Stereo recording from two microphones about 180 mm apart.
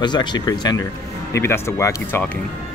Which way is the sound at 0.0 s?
25° left (ahead or behind).